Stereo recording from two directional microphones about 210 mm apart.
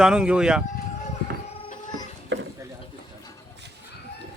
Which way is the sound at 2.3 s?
60° right (ahead or behind).